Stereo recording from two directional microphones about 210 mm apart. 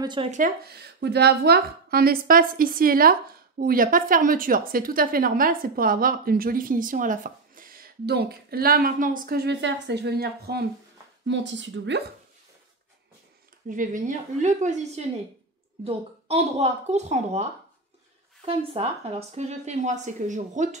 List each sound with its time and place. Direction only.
0.0 s speech: 20° right (ahead or behind)
0.3 s a woman's voice: 45° right (ahead or behind)
11.2 s speech: 60° right (ahead or behind)
13.7 s speech: 40° right (ahead or behind)